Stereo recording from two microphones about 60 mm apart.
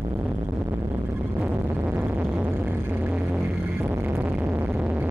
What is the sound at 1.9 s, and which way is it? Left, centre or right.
Music, right.